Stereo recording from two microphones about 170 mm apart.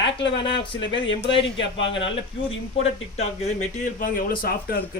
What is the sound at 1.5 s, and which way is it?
Speech, 90° left.